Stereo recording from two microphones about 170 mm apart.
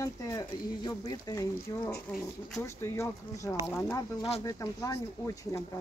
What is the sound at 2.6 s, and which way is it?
A woman's voice, 15° left (ahead or behind).